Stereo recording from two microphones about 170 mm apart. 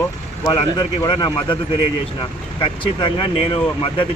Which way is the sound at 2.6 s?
30° left (ahead or behind).